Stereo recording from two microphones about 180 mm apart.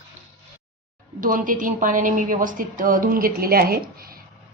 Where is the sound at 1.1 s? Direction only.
50° right (ahead or behind).